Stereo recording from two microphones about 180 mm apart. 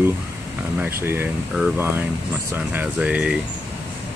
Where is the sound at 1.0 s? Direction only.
10° right (ahead or behind).